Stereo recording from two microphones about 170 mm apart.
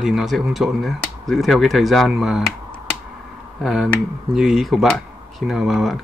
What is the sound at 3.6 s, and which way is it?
Speech, 5° right (ahead or behind).